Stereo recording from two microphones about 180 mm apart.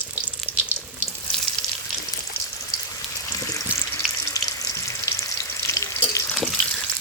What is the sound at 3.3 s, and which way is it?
Water, 20° left (ahead or behind).